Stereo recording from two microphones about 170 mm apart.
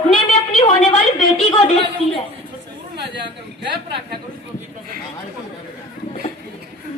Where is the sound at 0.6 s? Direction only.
40° left (ahead or behind).